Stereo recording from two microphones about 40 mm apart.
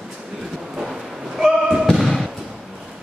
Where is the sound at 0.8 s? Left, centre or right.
Centre.